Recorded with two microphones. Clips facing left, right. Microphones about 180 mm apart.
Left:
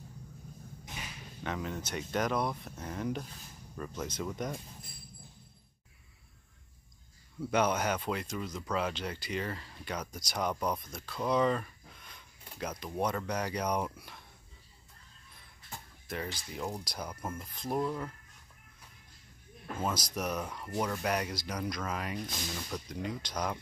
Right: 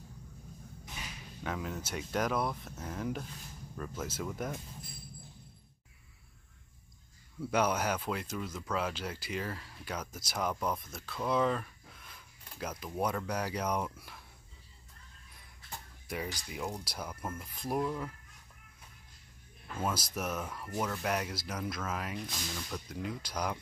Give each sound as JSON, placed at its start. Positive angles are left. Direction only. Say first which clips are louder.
{"t": 1.4, "sound": "speech", "louder": "left 1 dB", "side_deg": -5}
{"t": 7.5, "sound": "speech", "louder": "left 1 dB", "side_deg": -5}
{"t": 16.1, "sound": "speech", "louder": "even", "side_deg": -10}
{"t": 17.1, "sound": "speech", "louder": "even", "side_deg": 10}
{"t": 17.4, "sound": "speech", "louder": "left 1 dB", "side_deg": -5}
{"t": 19.8, "sound": "speech", "louder": "left 1 dB", "side_deg": -5}